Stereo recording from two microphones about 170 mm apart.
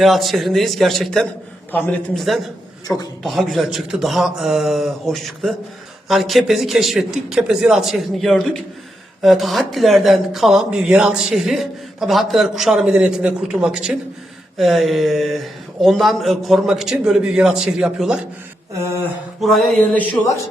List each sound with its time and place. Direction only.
0.0 s speech: centre (ahead or behind)
2.9 s a man's voice: 10° left (ahead or behind)
3.2 s speech: centre (ahead or behind)
18.7 s a sound: 15° right (ahead or behind)
19.4 s speech: centre (ahead or behind)